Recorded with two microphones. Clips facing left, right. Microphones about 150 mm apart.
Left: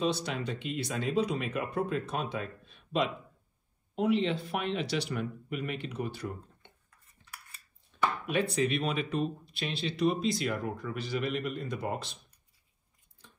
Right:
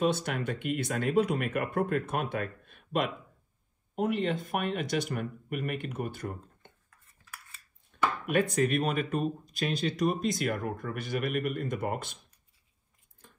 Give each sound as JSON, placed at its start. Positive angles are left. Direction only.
{"t": 0.0, "sound": "speech", "side_deg": -55}
{"t": 8.3, "sound": "speech", "side_deg": -50}
{"t": 13.2, "sound": "a sound", "side_deg": -50}